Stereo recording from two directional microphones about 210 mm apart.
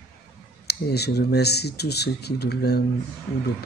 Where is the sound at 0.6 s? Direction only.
50° left (ahead or behind).